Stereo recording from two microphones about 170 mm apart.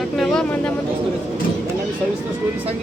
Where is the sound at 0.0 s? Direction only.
5° left (ahead or behind).